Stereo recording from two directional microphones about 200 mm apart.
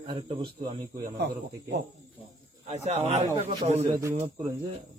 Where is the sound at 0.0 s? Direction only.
25° right (ahead or behind).